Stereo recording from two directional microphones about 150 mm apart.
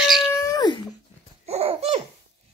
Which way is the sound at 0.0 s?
Centre (ahead or behind).